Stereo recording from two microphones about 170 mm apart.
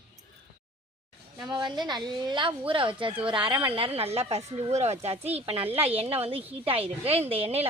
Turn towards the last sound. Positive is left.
turn(degrees=-35)  # may be behind; listen again after turning